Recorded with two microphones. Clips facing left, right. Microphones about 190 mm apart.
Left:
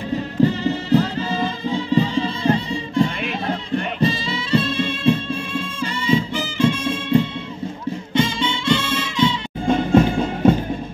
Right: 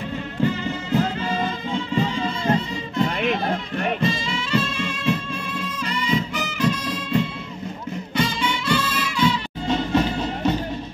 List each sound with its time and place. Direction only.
0.4 s music: 35° left (ahead or behind)
9.7 s music: 50° left (ahead or behind)